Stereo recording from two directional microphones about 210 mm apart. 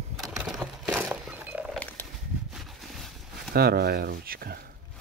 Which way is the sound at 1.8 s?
10° left (ahead or behind).